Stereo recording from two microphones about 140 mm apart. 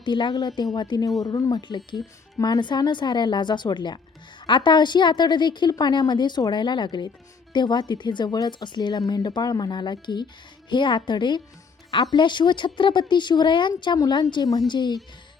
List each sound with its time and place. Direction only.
0.0 s speech: 35° left (ahead or behind)